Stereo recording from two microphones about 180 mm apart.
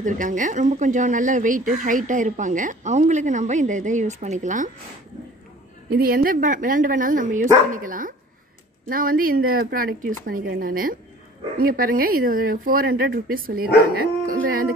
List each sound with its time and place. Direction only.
0.0 s speech: 45° right (ahead or behind)
5.9 s speech: 55° right (ahead or behind)
13.9 s dog: 50° right (ahead or behind)